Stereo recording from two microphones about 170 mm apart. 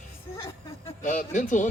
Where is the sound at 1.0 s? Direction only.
50° left (ahead or behind).